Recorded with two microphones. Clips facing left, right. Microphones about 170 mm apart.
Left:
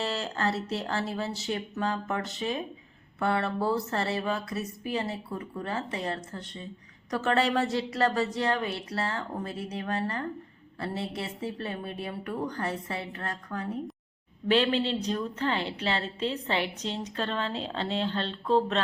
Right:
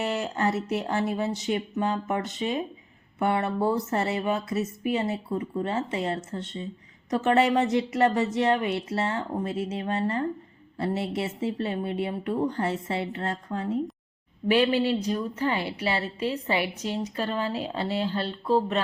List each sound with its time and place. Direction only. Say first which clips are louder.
0.0 s speech: right 3 dB; 20° right (ahead or behind)
14.4 s a woman's voice: right 3 dB; 10° right (ahead or behind)